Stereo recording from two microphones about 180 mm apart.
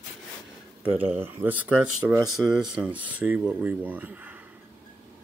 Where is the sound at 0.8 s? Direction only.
10° right (ahead or behind).